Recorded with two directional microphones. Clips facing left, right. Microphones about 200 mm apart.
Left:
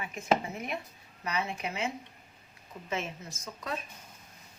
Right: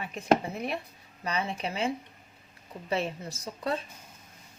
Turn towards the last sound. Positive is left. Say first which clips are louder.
# right 6 dB
turn(degrees=-30)  # may be behind; listen again after turning